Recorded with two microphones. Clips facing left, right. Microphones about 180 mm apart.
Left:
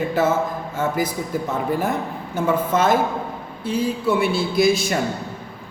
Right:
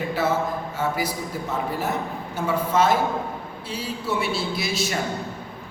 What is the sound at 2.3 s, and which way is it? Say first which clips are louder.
A man's voice: left 3 dB; 50° left (ahead or behind).